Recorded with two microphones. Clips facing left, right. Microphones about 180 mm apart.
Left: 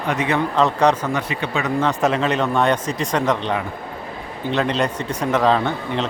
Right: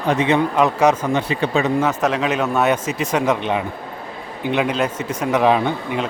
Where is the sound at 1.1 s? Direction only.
30° right (ahead or behind).